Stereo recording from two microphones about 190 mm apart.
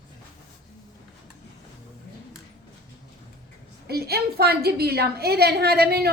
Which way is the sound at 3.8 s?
55° right (ahead or behind).